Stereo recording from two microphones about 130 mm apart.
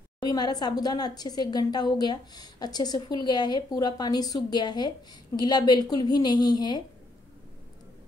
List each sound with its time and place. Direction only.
0.2 s speech: 30° left (ahead or behind)